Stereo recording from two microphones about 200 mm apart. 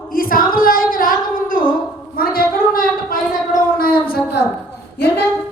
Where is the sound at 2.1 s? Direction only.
50° left (ahead or behind).